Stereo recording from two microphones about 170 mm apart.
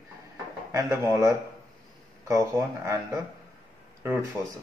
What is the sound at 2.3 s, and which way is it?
Speech, 20° right (ahead or behind).